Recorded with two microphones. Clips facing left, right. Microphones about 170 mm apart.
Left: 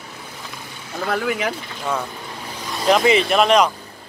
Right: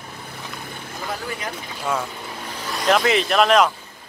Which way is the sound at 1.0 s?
75° left (ahead or behind).